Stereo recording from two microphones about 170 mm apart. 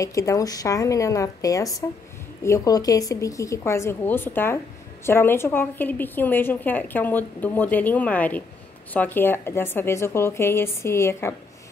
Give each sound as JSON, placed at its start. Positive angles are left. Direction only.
{"t": 0.0, "sound": "a woman's voice", "side_deg": 20}